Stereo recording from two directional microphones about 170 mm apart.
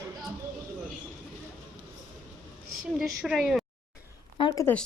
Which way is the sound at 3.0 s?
5° right (ahead or behind).